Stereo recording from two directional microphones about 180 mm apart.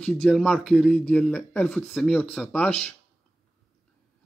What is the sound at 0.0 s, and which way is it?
Speech, centre (ahead or behind).